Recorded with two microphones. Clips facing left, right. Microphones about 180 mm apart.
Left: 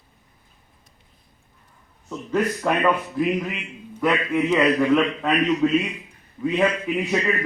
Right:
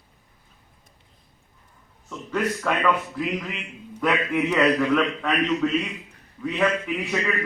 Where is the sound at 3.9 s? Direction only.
Centre (ahead or behind); by 5.6 s 20° left (ahead or behind).